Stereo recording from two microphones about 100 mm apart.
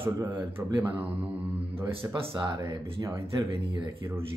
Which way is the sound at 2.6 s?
30° right (ahead or behind).